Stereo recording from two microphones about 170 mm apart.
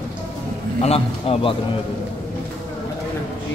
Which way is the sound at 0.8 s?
35° left (ahead or behind).